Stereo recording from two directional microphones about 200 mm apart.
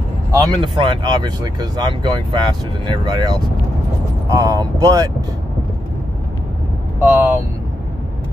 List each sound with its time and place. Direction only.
0.4 s speech: 25° right (ahead or behind)
7.0 s vehicle: 10° right (ahead or behind)